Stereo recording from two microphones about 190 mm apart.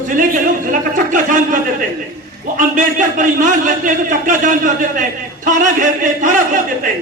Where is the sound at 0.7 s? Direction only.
45° right (ahead or behind).